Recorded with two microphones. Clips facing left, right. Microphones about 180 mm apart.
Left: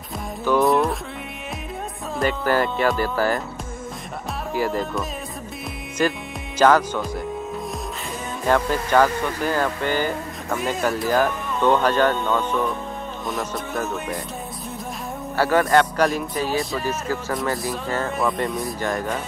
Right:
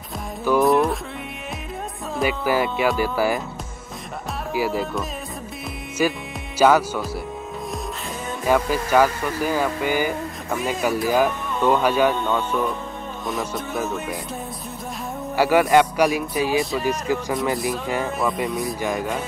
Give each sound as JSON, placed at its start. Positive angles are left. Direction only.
{"t": 0.5, "sound": "music", "side_deg": 0}
{"t": 2.1, "sound": "speech", "side_deg": -10}
{"t": 4.6, "sound": "speech", "side_deg": -5}
{"t": 8.5, "sound": "speech", "side_deg": -10}
{"t": 13.3, "sound": "music", "side_deg": 0}
{"t": 15.3, "sound": "speech", "side_deg": -10}
{"t": 18.2, "sound": "music", "side_deg": 0}